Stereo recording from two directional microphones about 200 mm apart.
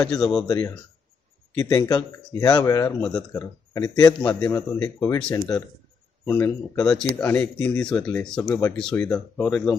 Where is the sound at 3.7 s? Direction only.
20° left (ahead or behind).